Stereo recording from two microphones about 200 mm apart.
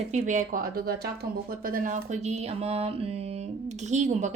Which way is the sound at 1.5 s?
45° right (ahead or behind).